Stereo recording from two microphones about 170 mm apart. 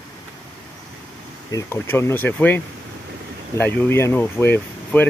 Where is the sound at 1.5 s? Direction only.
15° left (ahead or behind).